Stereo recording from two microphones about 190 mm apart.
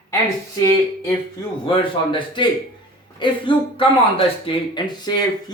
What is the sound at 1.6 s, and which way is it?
Speech, 25° left (ahead or behind).